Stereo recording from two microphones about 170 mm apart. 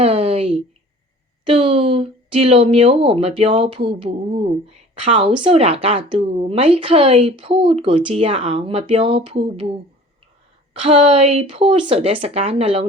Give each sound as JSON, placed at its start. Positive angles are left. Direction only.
{"t": 0.0, "sound": "a sound", "side_deg": -35}
{"t": 1.5, "sound": "speech", "side_deg": -30}
{"t": 10.8, "sound": "speech", "side_deg": -35}